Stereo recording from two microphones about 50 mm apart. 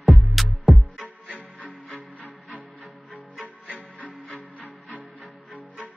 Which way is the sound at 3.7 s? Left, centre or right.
Left.